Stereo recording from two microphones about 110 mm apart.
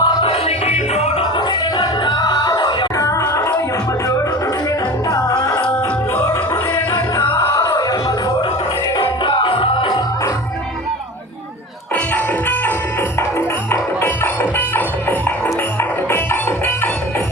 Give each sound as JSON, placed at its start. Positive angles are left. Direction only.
{"t": 0.0, "sound": "music", "side_deg": 55}
{"t": 1.2, "sound": "music", "side_deg": 45}
{"t": 5.0, "sound": "music", "side_deg": 35}
{"t": 7.5, "sound": "music", "side_deg": 35}
{"t": 9.0, "sound": "music", "side_deg": 50}
{"t": 12.1, "sound": "music", "side_deg": 15}
{"t": 15.4, "sound": "music", "side_deg": 20}